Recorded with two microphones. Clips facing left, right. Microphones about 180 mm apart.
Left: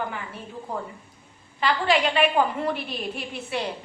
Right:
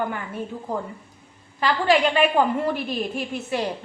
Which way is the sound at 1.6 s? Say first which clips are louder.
Right 3 dB; 40° right (ahead or behind).